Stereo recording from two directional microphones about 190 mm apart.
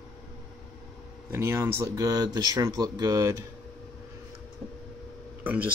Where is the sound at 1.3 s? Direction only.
15° right (ahead or behind).